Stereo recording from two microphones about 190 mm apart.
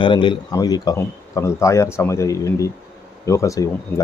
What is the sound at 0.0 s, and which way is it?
A man's voice, 25° left (ahead or behind).